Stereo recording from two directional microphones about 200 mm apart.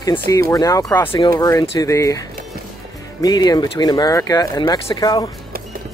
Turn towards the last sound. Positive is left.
turn(degrees=20)  # may be behind; listen again after turning